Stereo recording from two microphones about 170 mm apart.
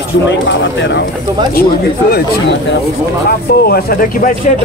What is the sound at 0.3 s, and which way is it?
Speech, 90° left.